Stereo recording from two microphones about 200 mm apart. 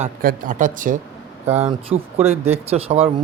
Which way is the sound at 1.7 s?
30° right (ahead or behind).